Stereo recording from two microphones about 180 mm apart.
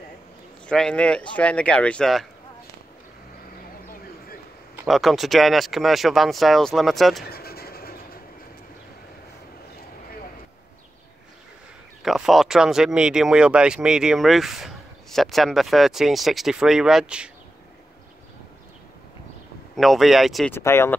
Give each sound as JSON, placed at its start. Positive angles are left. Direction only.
{"t": 0.7, "sound": "speech", "side_deg": 5}
{"t": 4.8, "sound": "speech", "side_deg": 0}
{"t": 7.2, "sound": "vehicle", "side_deg": 60}
{"t": 12.0, "sound": "speech", "side_deg": 0}
{"t": 19.7, "sound": "speech", "side_deg": 0}
{"t": 20.5, "sound": "speech", "side_deg": 15}